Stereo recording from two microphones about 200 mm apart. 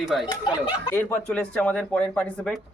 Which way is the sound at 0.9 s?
10° left (ahead or behind).